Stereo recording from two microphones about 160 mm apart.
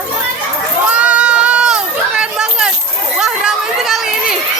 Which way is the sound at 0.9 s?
5° right (ahead or behind).